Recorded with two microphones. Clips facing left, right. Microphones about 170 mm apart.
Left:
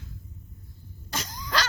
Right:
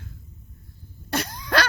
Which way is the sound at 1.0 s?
60° right (ahead or behind).